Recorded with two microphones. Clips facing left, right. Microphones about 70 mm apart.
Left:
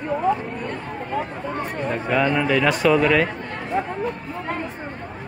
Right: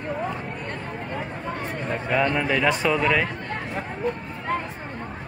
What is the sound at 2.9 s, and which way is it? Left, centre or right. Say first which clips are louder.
Speech: left 7 dB; centre.